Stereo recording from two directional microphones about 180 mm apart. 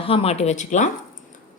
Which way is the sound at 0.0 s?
30° left (ahead or behind).